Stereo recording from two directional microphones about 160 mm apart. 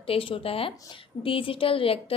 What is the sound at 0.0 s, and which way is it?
Speech, 35° left (ahead or behind).